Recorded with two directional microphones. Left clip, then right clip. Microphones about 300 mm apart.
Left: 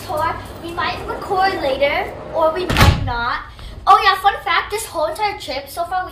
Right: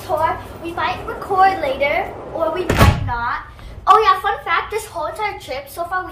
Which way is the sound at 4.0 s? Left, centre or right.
Left.